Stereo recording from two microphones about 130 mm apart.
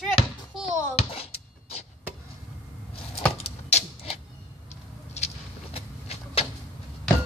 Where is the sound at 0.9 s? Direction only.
50° left (ahead or behind).